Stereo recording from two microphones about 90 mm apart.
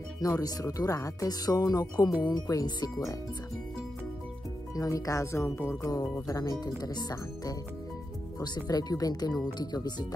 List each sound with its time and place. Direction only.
0.2 s speech: 40° left (ahead or behind)
4.7 s speech: 40° left (ahead or behind)